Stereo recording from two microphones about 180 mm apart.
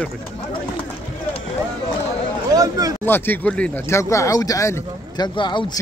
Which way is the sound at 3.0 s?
10° left (ahead or behind).